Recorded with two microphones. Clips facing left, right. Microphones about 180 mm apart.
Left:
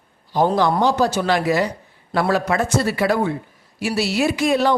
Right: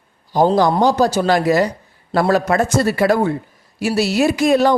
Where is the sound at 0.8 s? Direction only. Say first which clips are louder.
Right 3 dB; 40° right (ahead or behind).